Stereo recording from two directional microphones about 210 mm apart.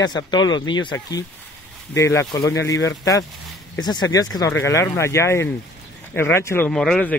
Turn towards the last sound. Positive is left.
turn(degrees=5)  # may be behind; listen again after turning